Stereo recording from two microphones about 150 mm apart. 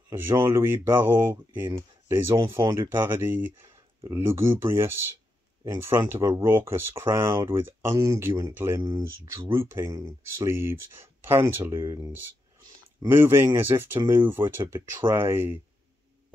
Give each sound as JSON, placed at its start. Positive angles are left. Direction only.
{"t": 0.4, "sound": "speech", "side_deg": -20}
{"t": 2.6, "sound": "speech", "side_deg": -30}
{"t": 3.0, "sound": "speech", "side_deg": -15}